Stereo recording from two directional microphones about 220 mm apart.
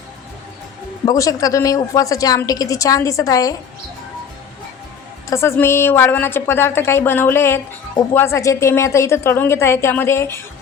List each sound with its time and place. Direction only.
1.0 s a woman's voice: 15° left (ahead or behind)
5.3 s a woman's voice: 10° left (ahead or behind)